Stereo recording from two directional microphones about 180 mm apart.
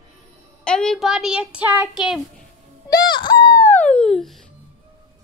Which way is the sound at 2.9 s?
25° left (ahead or behind).